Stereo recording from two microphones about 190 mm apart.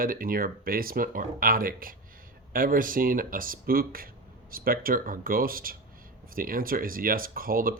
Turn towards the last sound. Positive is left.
turn(degrees=-50)  # may be behind; listen again after turning